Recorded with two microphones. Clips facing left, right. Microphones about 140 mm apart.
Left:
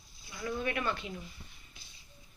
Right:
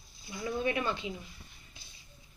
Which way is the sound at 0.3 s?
25° right (ahead or behind).